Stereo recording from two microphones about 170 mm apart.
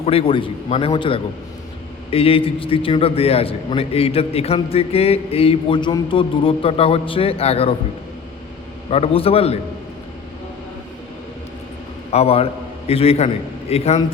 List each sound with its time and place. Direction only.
0.0 s a man's voice: 35° left (ahead or behind)
8.9 s a man's voice: 35° left (ahead or behind)
12.1 s a man's voice: 35° left (ahead or behind)